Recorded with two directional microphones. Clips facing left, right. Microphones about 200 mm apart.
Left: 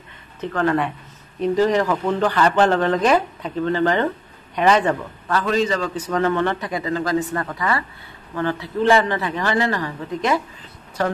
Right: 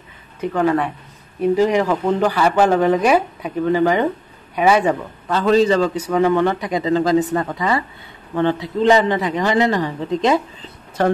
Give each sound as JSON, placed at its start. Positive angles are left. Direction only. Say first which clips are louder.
{"t": 0.4, "sound": "speech", "louder": "right 3 dB", "side_deg": -10}
{"t": 5.4, "sound": "a man's voice", "louder": "right 7 dB", "side_deg": -30}
{"t": 5.9, "sound": "a man's voice", "louder": "right 4 dB", "side_deg": -10}